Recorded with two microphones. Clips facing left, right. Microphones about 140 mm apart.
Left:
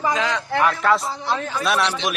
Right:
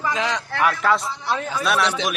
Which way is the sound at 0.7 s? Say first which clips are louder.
Right 1 dB; centre (ahead or behind).